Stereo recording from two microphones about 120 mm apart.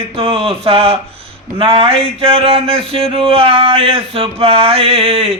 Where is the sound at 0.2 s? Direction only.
55° right (ahead or behind).